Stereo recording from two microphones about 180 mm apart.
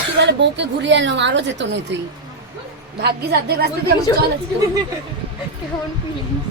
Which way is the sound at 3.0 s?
65° right (ahead or behind).